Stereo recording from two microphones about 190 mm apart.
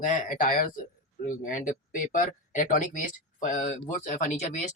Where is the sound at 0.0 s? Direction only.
45° left (ahead or behind).